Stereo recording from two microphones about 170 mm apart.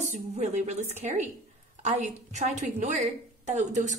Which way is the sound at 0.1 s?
45° right (ahead or behind).